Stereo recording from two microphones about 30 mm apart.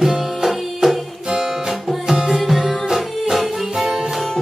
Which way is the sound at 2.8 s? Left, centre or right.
Centre.